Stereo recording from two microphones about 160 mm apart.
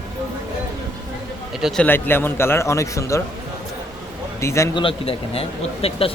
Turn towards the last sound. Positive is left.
turn(degrees=35)  # may be behind; listen again after turning